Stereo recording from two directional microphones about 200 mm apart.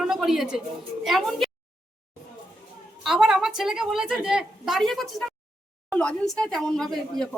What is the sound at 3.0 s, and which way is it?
Speech, centre (ahead or behind).